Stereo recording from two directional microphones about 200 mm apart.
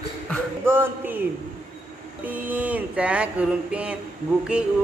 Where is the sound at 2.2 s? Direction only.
10° right (ahead or behind).